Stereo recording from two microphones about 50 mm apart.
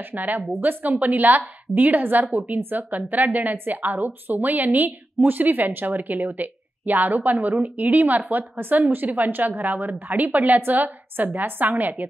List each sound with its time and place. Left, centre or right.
0.1 s a woman's voice: right